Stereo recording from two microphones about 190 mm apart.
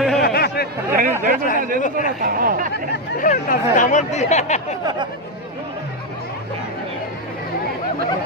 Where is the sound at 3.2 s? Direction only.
45° left (ahead or behind).